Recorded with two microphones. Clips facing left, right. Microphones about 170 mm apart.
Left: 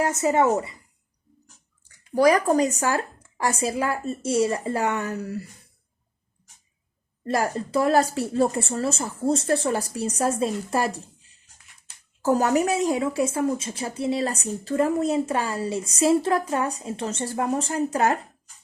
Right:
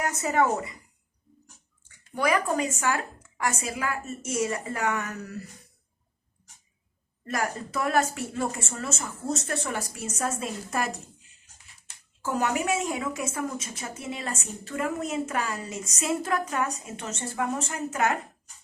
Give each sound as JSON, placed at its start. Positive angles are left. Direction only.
{"t": 0.0, "sound": "speech", "side_deg": 25}
{"t": 1.8, "sound": "a woman's voice", "side_deg": 35}
{"t": 7.3, "sound": "a woman's voice", "side_deg": 30}
{"t": 12.2, "sound": "a woman's voice", "side_deg": 40}